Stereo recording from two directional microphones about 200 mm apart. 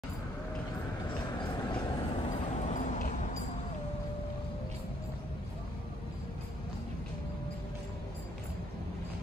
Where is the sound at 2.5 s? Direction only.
35° left (ahead or behind).